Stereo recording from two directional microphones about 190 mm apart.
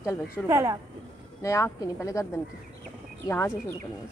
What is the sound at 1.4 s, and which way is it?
Speech, 15° left (ahead or behind).